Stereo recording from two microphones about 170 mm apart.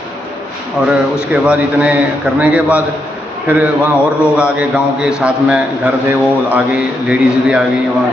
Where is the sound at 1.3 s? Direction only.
10° right (ahead or behind).